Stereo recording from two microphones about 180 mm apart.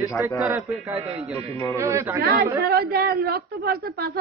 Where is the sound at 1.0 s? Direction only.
35° right (ahead or behind).